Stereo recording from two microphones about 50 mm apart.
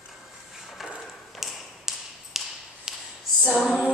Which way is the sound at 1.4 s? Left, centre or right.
Centre.